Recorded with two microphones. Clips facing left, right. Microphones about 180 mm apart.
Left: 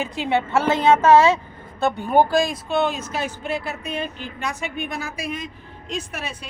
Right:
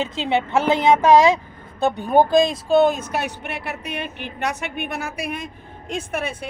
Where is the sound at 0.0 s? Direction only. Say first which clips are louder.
Right 1 dB; 20° right (ahead or behind); by 3.0 s 40° right (ahead or behind).